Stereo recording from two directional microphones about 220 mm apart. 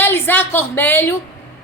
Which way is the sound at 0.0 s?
10° left (ahead or behind).